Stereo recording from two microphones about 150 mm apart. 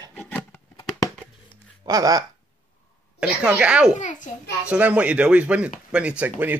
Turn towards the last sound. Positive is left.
turn(degrees=-10)  # may be behind; listen again after turning